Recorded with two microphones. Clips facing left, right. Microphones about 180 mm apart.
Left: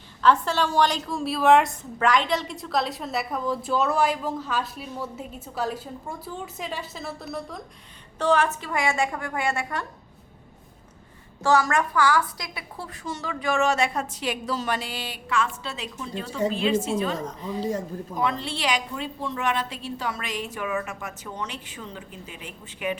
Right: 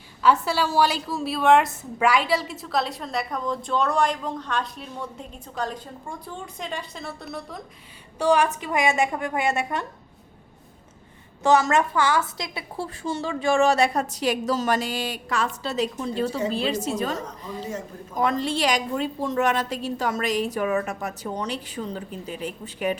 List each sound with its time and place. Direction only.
0.2 s a woman's voice: 10° right (ahead or behind)
8.2 s a woman's voice: 15° right (ahead or behind)
11.4 s a woman's voice: 20° right (ahead or behind); by 17.2 s 40° right (ahead or behind)
17.6 s speech: 35° left (ahead or behind)
18.2 s a woman's voice: 45° right (ahead or behind)